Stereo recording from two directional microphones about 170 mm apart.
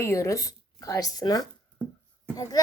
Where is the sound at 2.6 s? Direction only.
20° left (ahead or behind).